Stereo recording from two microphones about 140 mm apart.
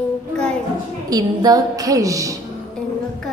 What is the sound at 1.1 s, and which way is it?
A woman's voice, 25° right (ahead or behind).